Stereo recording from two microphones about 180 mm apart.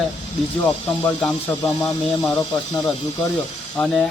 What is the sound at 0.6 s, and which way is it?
A man's voice, 10° left (ahead or behind).